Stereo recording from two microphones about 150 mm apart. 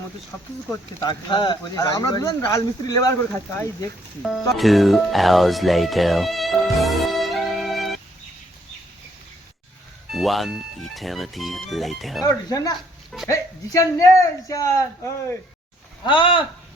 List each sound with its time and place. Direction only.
0.7 s speech: 25° left (ahead or behind)
4.2 s speech: centre (ahead or behind)
10.1 s speech: centre (ahead or behind)
12.2 s speech: 25° left (ahead or behind)
16.0 s speech: 35° left (ahead or behind)